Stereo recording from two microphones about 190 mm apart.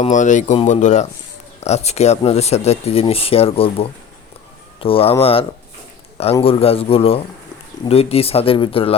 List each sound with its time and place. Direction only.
0.0 s speech: 40° left (ahead or behind)